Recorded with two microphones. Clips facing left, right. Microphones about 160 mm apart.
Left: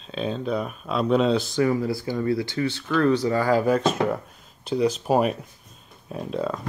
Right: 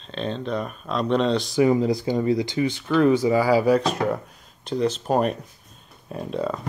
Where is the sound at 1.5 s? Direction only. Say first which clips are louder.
Right 3 dB; 20° right (ahead or behind).